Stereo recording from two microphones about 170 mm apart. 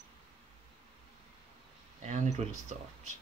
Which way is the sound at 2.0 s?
45° right (ahead or behind).